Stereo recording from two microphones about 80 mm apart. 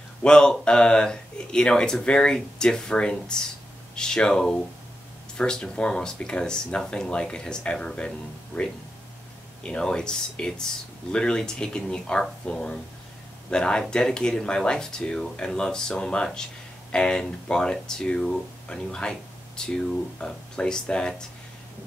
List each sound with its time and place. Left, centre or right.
0.2 s speech: centre